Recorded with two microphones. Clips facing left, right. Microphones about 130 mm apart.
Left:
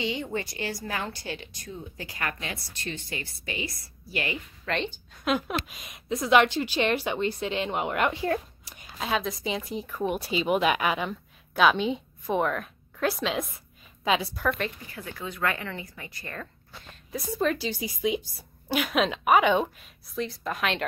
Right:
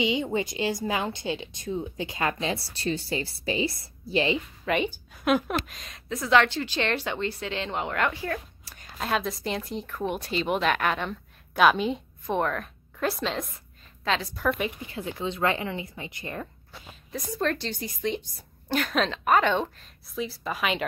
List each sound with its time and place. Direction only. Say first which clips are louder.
0.0 s a woman's voice: right 5 dB; 15° right (ahead or behind)
4.6 s a woman's voice: right 3 dB; 10° right (ahead or behind); by 8.7 s 25° left (ahead or behind)
8.9 s a woman's voice: right 1 dB; centre (ahead or behind)
14.4 s a woman's voice: right 1 dB; 10° right (ahead or behind)
14.9 s a woman's voice: right 6 dB; 25° right (ahead or behind)
17.1 s a woman's voice: left 1 dB; 5° left (ahead or behind)
20.2 s speech: even; centre (ahead or behind)